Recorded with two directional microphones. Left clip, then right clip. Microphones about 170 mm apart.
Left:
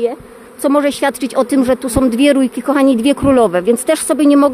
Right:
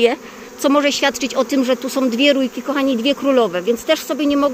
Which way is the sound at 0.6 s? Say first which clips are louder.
Left 2 dB; 20° left (ahead or behind).